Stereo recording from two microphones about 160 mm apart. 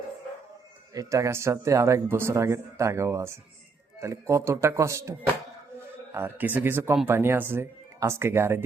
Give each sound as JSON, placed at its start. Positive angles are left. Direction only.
{"t": 0.9, "sound": "speech", "side_deg": -20}